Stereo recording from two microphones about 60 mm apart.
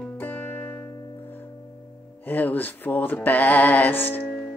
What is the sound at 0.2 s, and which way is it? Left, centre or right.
Music, left.